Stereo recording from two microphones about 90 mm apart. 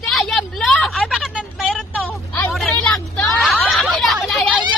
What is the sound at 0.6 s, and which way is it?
Speech, 5° left (ahead or behind).